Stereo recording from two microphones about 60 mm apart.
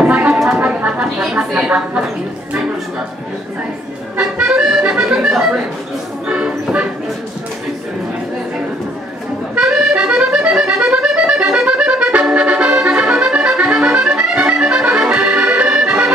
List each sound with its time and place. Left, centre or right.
0.0 s a sound: right
4.2 s accordion: centre
5.3 s music: centre
9.6 s accordion: centre